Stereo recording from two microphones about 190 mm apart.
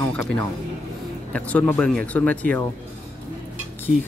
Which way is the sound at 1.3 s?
5° left (ahead or behind).